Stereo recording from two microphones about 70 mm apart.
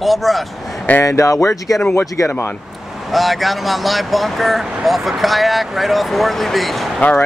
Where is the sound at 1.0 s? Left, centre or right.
Left.